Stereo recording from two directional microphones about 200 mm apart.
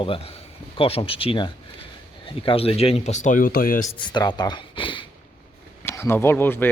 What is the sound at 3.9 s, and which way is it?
Speech, 20° left (ahead or behind).